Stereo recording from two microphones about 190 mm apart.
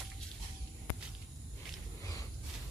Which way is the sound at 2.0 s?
15° left (ahead or behind).